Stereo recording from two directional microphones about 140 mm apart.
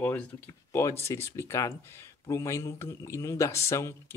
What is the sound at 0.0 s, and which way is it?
Speech, 10° left (ahead or behind).